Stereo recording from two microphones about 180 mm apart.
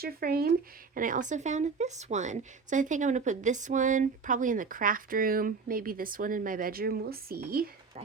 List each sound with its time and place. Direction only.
0.0 s a woman's voice: 55° right (ahead or behind)